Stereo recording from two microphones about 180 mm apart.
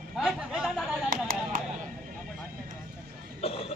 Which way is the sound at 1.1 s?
50° right (ahead or behind).